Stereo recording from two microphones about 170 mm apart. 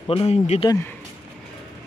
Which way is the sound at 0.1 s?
35° left (ahead or behind).